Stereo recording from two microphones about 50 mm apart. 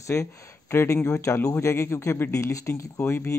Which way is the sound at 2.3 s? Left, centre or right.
Left.